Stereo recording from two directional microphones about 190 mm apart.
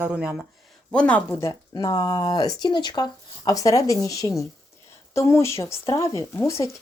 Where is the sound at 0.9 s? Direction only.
5° left (ahead or behind).